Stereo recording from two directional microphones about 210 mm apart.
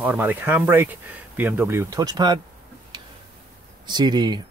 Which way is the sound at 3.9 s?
20° right (ahead or behind).